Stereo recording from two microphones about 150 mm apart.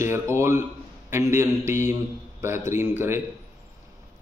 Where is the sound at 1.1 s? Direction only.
20° right (ahead or behind).